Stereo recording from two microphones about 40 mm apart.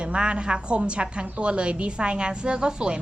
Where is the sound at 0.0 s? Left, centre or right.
Right.